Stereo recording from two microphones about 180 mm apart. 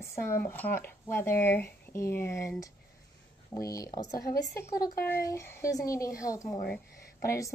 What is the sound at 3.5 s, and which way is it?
Speech, 20° left (ahead or behind).